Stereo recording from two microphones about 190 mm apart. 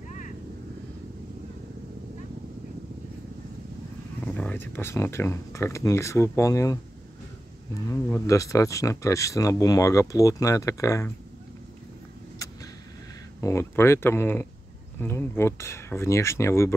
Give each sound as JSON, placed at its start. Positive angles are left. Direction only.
{"t": 4.2, "sound": "speech", "side_deg": 5}
{"t": 13.4, "sound": "speech", "side_deg": 15}